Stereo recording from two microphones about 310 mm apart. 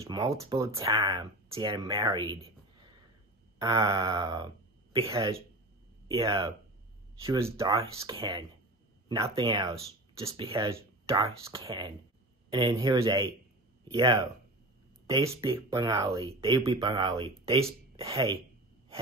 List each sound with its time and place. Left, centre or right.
0.0 s speech: centre
3.5 s speech: centre